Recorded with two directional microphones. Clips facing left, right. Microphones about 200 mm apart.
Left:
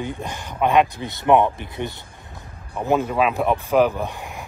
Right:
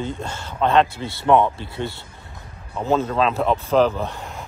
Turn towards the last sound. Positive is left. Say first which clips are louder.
# even
turn(degrees=15)  # may be behind; listen again after turning